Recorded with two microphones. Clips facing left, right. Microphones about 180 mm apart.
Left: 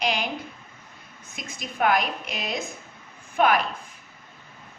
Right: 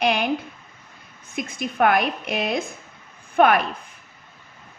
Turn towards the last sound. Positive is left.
turn(degrees=-55)  # may be behind; listen again after turning